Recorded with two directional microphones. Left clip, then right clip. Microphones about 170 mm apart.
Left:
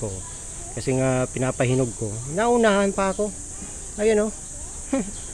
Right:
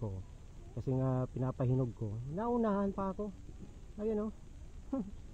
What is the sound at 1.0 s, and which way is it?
Speech, 20° left (ahead or behind).